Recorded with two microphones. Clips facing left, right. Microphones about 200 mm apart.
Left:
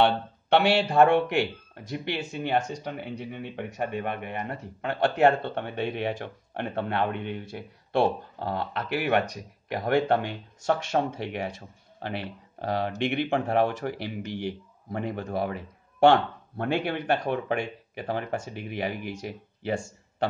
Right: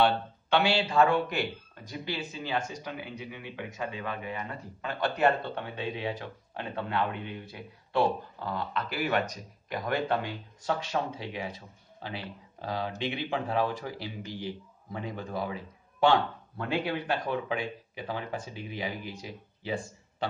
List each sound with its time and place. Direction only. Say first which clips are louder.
0.5 s speech: left 4 dB; 65° left (ahead or behind)
10.9 s speech: left 5 dB; 45° left (ahead or behind)
11.1 s speech: left 5 dB; 65° left (ahead or behind)